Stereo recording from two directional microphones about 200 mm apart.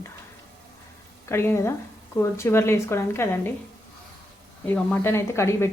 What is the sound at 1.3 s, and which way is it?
A woman's voice, 10° left (ahead or behind).